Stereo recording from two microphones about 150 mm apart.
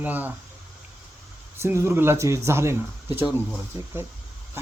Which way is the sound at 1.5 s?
15° right (ahead or behind).